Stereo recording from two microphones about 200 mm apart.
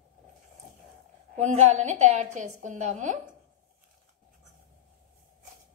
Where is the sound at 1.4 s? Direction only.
35° right (ahead or behind).